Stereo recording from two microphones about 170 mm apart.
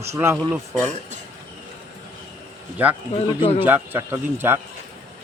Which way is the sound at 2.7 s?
10° right (ahead or behind).